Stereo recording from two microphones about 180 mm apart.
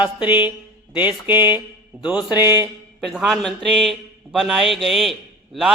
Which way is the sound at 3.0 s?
Centre (ahead or behind).